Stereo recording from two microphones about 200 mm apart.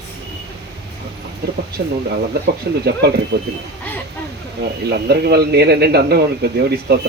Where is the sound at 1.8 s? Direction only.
55° right (ahead or behind).